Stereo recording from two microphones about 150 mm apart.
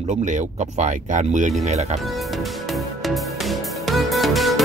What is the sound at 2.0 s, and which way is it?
Music, centre (ahead or behind).